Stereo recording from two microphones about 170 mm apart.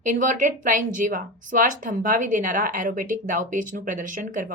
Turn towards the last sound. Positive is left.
turn(degrees=-50)  # may be behind; listen again after turning